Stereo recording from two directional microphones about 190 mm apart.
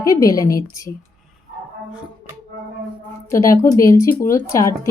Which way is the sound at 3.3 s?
15° left (ahead or behind).